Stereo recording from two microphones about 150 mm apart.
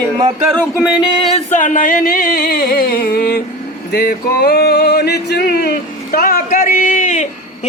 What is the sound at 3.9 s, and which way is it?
Male singing, 90° left.